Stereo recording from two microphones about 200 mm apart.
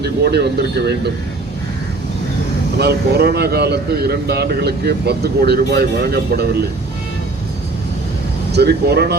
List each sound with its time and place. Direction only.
0.0 s speech: 55° right (ahead or behind)
2.7 s speech: 55° right (ahead or behind)
8.5 s speech: 55° right (ahead or behind)